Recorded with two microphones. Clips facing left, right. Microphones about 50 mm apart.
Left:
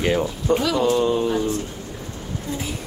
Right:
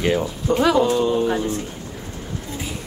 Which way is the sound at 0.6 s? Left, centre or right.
Right.